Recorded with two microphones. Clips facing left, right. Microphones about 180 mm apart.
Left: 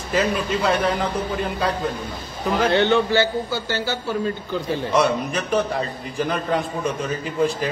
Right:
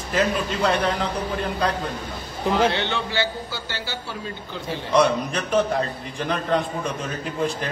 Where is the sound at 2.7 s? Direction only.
45° left (ahead or behind).